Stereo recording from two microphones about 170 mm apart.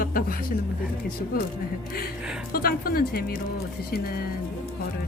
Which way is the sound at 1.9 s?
60° left (ahead or behind).